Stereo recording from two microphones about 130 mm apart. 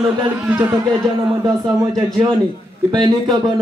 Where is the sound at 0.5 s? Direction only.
15° right (ahead or behind).